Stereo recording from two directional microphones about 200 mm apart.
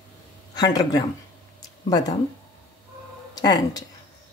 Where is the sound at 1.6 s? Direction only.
20° left (ahead or behind).